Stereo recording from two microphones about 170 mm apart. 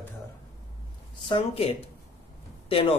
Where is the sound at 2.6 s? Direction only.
35° left (ahead or behind).